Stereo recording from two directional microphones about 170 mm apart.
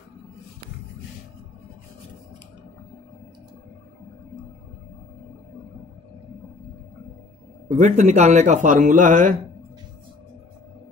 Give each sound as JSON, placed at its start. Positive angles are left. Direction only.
{"t": 7.6, "sound": "a man's voice", "side_deg": -40}